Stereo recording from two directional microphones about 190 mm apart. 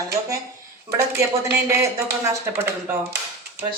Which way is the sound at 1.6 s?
15° right (ahead or behind).